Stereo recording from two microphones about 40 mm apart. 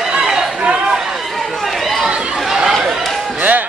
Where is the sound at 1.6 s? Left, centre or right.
Centre.